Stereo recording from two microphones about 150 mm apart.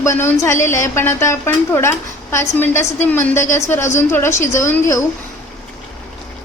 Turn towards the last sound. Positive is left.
turn(degrees=20)  # may be behind; listen again after turning